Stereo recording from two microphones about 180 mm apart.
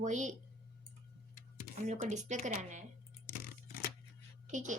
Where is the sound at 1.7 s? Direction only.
40° right (ahead or behind).